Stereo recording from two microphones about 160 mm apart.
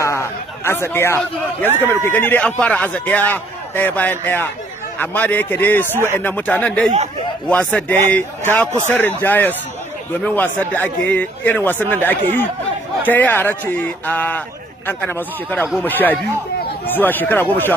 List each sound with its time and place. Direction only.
0.0 s a man's voice: 15° left (ahead or behind)